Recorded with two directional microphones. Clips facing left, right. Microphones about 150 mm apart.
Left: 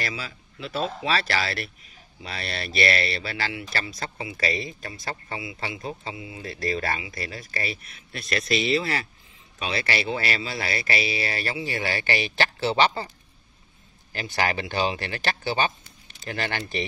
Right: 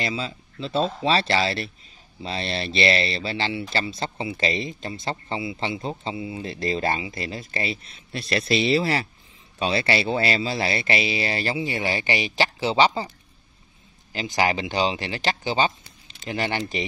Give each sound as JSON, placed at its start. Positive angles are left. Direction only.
{"t": 0.0, "sound": "speech", "side_deg": -25}
{"t": 14.1, "sound": "speech", "side_deg": -15}